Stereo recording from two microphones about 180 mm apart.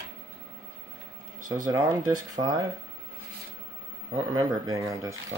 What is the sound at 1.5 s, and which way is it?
Speech, 20° right (ahead or behind).